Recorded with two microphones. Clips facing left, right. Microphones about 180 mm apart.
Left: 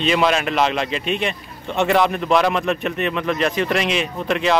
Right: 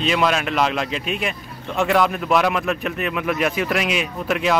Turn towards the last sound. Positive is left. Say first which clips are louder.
# left 1 dB
turn(degrees=-5)  # may be behind; listen again after turning